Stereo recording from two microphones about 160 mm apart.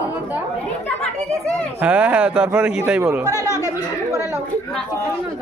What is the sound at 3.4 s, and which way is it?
Speech, 15° left (ahead or behind).